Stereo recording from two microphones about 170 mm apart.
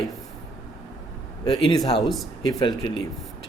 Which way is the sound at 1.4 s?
30° left (ahead or behind).